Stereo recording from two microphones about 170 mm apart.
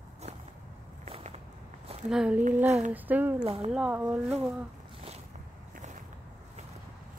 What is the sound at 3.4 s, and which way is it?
Speech, 35° right (ahead or behind).